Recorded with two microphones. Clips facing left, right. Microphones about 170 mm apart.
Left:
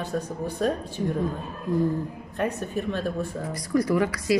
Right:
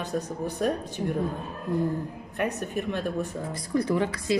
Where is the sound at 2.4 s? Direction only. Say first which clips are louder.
Left 1 dB; 15° right (ahead or behind).